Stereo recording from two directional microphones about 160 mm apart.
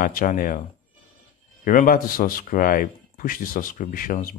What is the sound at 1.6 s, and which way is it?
Speech, 60° left (ahead or behind).